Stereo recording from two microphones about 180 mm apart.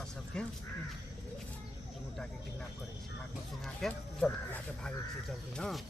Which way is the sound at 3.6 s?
5° left (ahead or behind).